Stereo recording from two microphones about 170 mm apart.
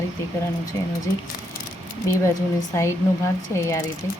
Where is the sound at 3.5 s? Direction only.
15° left (ahead or behind).